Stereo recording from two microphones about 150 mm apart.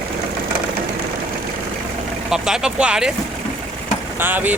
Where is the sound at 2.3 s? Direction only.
5° right (ahead or behind).